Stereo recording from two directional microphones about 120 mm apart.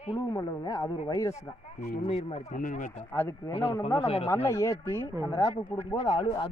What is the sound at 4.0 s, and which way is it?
Speech, 55° left (ahead or behind).